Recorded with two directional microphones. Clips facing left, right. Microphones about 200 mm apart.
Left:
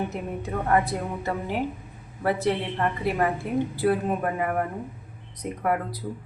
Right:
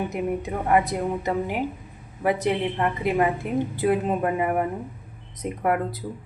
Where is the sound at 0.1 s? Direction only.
15° right (ahead or behind).